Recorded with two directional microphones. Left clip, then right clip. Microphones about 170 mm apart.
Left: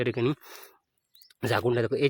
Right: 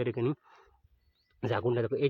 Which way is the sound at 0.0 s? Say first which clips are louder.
Left 4 dB; 30° left (ahead or behind).